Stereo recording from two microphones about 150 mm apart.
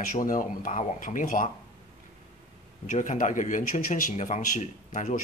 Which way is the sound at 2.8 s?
60° left (ahead or behind).